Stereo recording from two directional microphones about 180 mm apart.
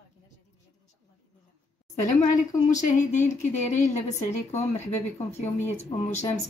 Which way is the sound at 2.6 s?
45° left (ahead or behind).